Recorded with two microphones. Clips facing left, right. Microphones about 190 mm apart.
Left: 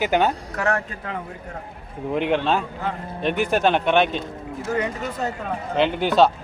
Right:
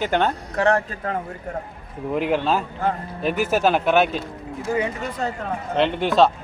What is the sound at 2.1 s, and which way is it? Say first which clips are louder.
A man's voice: even; 5° right (ahead or behind).